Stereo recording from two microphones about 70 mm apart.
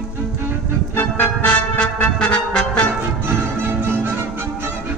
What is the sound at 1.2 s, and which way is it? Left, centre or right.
Music, centre.